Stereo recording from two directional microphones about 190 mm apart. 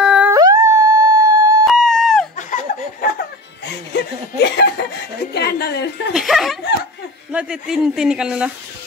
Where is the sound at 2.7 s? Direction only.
40° left (ahead or behind).